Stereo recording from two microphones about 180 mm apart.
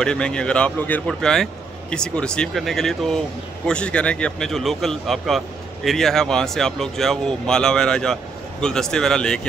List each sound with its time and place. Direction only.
0.0 s speech: 5° left (ahead or behind)